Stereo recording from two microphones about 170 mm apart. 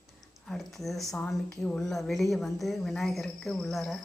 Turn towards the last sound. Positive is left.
turn(degrees=0)  # may be behind; listen again after turning